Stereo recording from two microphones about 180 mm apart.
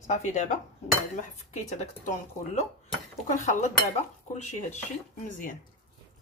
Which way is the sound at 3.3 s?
40° left (ahead or behind).